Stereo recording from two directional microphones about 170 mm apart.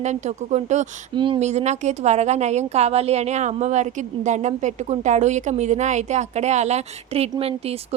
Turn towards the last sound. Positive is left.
turn(degrees=-35)  # may be behind; listen again after turning